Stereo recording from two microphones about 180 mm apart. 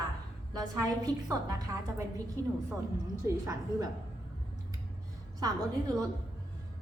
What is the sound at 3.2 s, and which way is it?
Speech, 20° right (ahead or behind).